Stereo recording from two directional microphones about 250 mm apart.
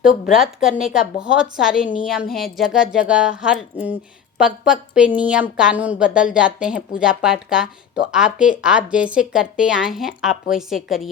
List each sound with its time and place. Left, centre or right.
0.3 s a woman's voice: centre